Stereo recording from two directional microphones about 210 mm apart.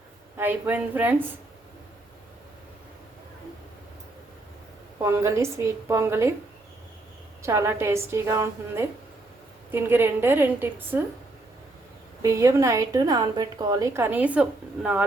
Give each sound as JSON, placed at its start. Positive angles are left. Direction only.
{"t": 0.3, "sound": "a woman's voice", "side_deg": -10}
{"t": 5.0, "sound": "a woman's voice", "side_deg": -15}
{"t": 7.4, "sound": "a woman's voice", "side_deg": -15}
{"t": 12.2, "sound": "a woman's voice", "side_deg": -15}